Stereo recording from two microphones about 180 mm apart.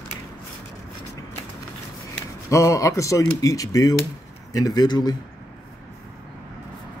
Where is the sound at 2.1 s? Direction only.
15° left (ahead or behind).